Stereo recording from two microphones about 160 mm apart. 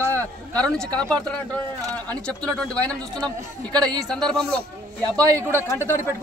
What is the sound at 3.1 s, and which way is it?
Speech, 25° right (ahead or behind).